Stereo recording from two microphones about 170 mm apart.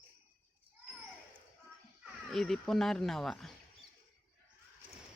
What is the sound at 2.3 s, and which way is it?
Speech, centre (ahead or behind).